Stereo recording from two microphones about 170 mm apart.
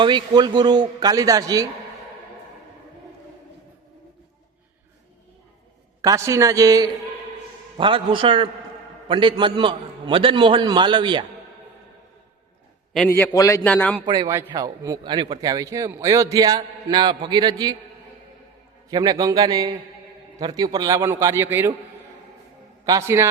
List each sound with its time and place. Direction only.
0.0 s speech: 25° right (ahead or behind)
6.0 s speech: 20° right (ahead or behind)
13.1 s a man's voice: 15° left (ahead or behind)
13.7 s a man's voice: 5° left (ahead or behind)
14.0 s speech: 25° right (ahead or behind)
18.9 s a man's voice: 25° right (ahead or behind)
22.9 s a man's voice: 15° right (ahead or behind)